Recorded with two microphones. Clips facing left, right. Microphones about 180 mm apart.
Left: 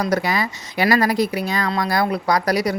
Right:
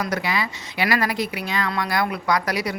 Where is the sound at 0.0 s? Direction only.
40° left (ahead or behind).